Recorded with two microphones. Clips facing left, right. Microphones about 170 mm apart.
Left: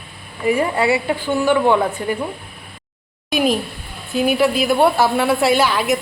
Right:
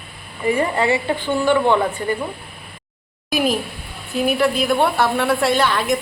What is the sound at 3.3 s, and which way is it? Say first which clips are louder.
A woman's voice: left 2 dB; centre (ahead or behind).